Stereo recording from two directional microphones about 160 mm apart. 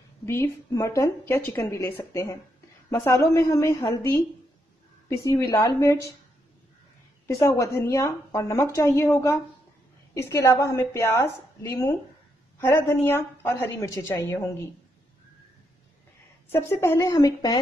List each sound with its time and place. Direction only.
0.2 s a woman's voice: 15° left (ahead or behind)
5.1 s a woman's voice: 15° left (ahead or behind)
7.2 s a woman's voice: 20° left (ahead or behind)
16.4 s a woman's voice: 15° left (ahead or behind)